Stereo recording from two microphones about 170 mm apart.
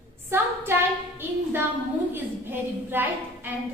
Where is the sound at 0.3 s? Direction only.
15° right (ahead or behind).